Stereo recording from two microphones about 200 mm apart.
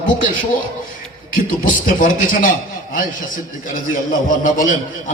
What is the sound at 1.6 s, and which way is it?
Speech, 40° left (ahead or behind).